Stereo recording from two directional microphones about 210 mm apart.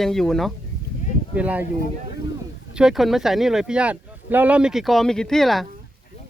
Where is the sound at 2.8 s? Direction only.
Centre (ahead or behind).